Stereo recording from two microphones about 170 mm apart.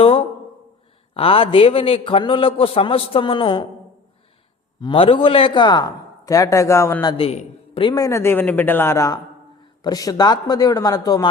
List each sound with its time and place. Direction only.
0.0 s a sound: 35° left (ahead or behind)
1.1 s a man's voice: 35° left (ahead or behind)
4.8 s a man's voice: 30° left (ahead or behind)
7.1 s a man's voice: 35° left (ahead or behind)